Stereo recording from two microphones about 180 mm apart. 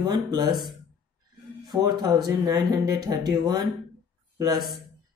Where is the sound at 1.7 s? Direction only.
25° right (ahead or behind).